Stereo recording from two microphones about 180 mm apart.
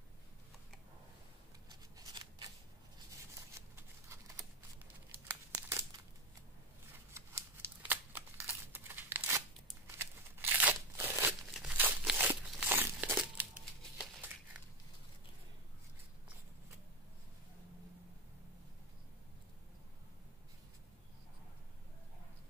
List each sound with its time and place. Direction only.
2.0 s scissors: 25° right (ahead or behind)
3.5 s a sound: 15° right (ahead or behind)
5.1 s crumpling: 10° right (ahead or behind)
6.9 s scissors: 15° right (ahead or behind)
9.8 s crunch: 15° right (ahead or behind)
13.9 s crumpling: 5° right (ahead or behind)